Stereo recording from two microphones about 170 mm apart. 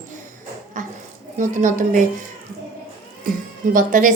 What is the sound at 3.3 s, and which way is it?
Speech, 55° right (ahead or behind).